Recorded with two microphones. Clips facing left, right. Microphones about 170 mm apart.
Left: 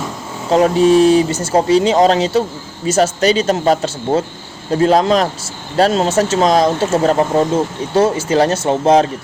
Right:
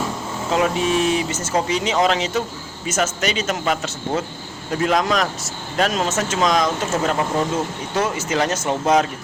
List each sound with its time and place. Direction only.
0.5 s speech: 35° left (ahead or behind)